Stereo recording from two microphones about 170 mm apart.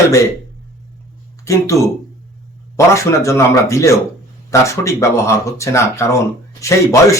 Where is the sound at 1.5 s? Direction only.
15° left (ahead or behind).